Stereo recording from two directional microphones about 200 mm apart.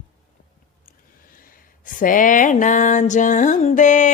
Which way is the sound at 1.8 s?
40° left (ahead or behind).